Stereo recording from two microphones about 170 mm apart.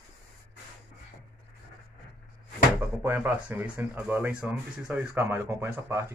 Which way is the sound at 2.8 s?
10° right (ahead or behind).